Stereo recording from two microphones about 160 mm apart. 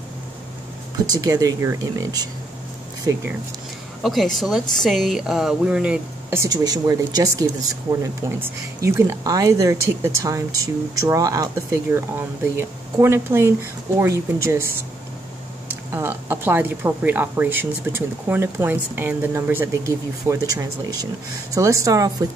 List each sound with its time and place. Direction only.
0.9 s speech: 25° right (ahead or behind)
4.0 s a woman's voice: centre (ahead or behind)
6.4 s speech: 25° right (ahead or behind)